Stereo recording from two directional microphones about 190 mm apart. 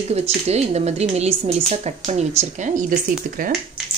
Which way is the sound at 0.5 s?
35° right (ahead or behind).